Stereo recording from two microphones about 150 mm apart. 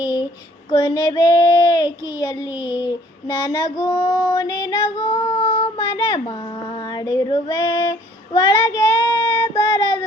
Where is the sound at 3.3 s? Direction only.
20° left (ahead or behind).